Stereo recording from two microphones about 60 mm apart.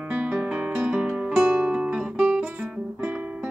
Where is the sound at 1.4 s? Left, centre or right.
Right.